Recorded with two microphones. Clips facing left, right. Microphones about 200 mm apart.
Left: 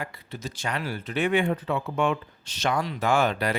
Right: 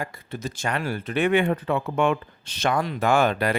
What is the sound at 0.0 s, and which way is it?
Speech, 50° right (ahead or behind).